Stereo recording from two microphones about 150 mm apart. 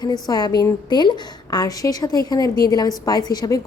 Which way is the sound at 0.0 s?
25° left (ahead or behind).